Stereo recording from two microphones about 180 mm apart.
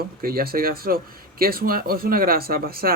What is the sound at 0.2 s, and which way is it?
Speech, 55° right (ahead or behind).